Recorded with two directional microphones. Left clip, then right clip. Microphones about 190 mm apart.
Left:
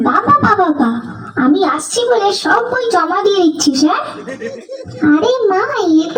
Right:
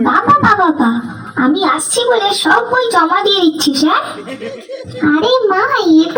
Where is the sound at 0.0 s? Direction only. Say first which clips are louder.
Right 1 dB; 30° left (ahead or behind).